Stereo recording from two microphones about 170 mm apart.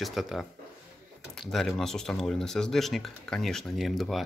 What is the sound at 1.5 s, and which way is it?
Speech, centre (ahead or behind).